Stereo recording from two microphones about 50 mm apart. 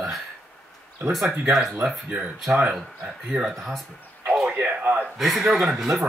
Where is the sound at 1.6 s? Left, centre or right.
Centre.